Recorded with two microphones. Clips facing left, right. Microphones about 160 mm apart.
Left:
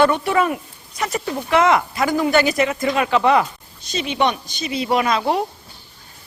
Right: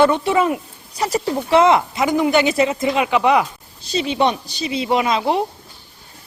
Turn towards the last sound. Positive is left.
turn(degrees=-20)  # may be behind; listen again after turning